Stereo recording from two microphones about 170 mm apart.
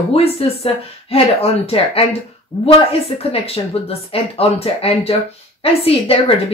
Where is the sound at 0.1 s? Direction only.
35° left (ahead or behind).